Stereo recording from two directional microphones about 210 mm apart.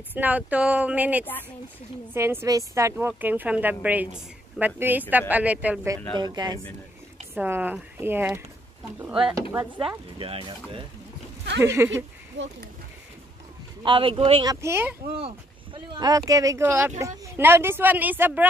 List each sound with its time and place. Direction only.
0.1 s a woman's voice: 10° right (ahead or behind)
6.1 s a woman's voice: 20° right (ahead or behind)
10.1 s speech: 25° right (ahead or behind)
11.6 s a woman's voice: 10° right (ahead or behind)
13.8 s speech: 25° right (ahead or behind)
15.1 s a woman's voice: 25° right (ahead or behind); by 18.5 s 10° right (ahead or behind)